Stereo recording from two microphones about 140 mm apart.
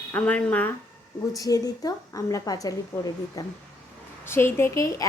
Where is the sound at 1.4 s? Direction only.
25° left (ahead or behind).